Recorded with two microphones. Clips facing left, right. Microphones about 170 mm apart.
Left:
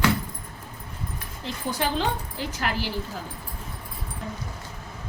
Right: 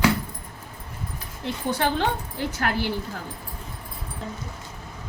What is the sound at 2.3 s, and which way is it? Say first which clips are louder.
Speech: right 3 dB; 55° right (ahead or behind).